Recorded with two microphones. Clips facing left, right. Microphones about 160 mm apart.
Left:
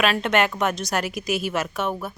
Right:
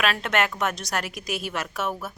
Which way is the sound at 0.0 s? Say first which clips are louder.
Left 4 dB; centre (ahead or behind).